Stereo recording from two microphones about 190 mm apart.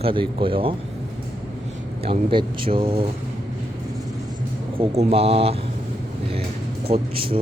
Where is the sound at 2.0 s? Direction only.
30° right (ahead or behind).